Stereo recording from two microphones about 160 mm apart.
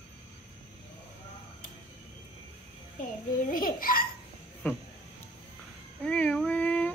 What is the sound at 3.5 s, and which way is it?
Hiccup, 60° left (ahead or behind).